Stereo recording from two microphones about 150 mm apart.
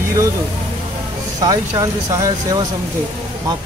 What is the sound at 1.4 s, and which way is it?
Speech, 20° right (ahead or behind).